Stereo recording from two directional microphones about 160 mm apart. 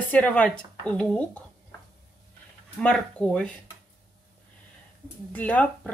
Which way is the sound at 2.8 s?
5° left (ahead or behind).